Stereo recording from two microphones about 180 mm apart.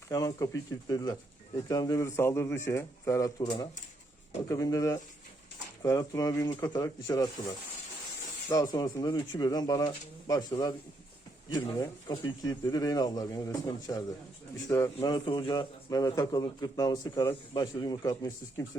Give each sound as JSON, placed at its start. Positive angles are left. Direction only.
{"t": 0.1, "sound": "a man's voice", "side_deg": 20}
{"t": 8.4, "sound": "a man's voice", "side_deg": 20}